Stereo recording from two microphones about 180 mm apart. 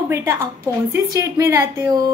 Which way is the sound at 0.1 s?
15° right (ahead or behind).